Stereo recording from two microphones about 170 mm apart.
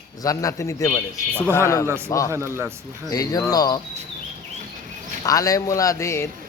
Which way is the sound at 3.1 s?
20° left (ahead or behind).